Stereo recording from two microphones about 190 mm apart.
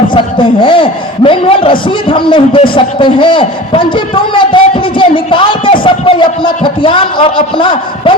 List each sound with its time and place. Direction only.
0.1 s a man's voice: 25° left (ahead or behind)